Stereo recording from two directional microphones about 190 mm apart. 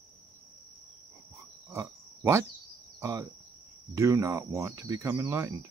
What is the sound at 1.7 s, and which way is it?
Pig, 15° right (ahead or behind).